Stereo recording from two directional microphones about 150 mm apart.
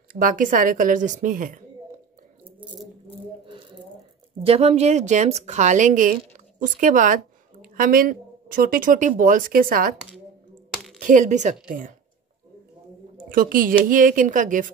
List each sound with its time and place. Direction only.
0.1 s a woman's voice: 65° right (ahead or behind)
3.4 s a sound: 35° right (ahead or behind)
4.4 s a woman's voice: 40° right (ahead or behind); by 9.9 s 70° right (ahead or behind)
11.0 s speech: 60° right (ahead or behind)
13.3 s a woman's voice: 70° right (ahead or behind)